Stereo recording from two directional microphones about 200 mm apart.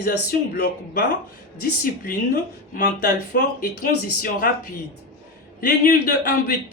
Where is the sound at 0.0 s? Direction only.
50° left (ahead or behind).